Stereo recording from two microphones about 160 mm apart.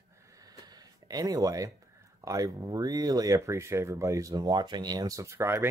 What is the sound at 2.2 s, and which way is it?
Speech, 20° right (ahead or behind).